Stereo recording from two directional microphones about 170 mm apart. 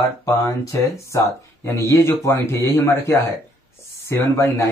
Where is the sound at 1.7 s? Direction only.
15° left (ahead or behind).